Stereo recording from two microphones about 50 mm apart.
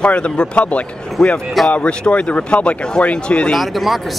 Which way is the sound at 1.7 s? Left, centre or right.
Left.